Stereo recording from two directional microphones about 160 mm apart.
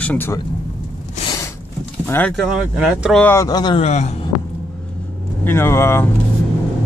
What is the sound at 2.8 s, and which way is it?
Speech, 5° right (ahead or behind).